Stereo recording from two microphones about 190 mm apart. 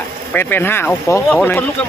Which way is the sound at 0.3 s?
10° left (ahead or behind).